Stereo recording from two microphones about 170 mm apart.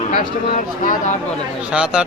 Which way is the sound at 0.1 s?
50° left (ahead or behind).